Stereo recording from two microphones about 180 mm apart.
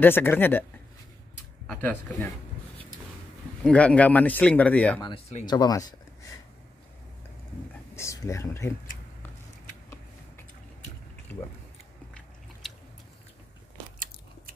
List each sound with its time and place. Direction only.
0.0 s speech: 10° left (ahead or behind)
1.7 s speech: 10° left (ahead or behind)
3.6 s speech: 5° left (ahead or behind)
5.0 s speech: 30° left (ahead or behind)
7.9 s speech: 15° left (ahead or behind)
12.6 s chewing: centre (ahead or behind)